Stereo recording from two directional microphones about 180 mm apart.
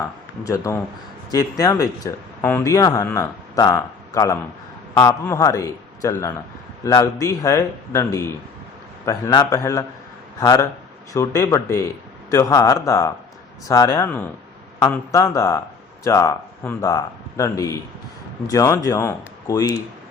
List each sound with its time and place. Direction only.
0.0 s a man's voice: 20° left (ahead or behind)